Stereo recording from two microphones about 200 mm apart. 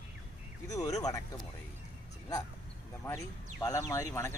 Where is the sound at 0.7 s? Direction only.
15° left (ahead or behind).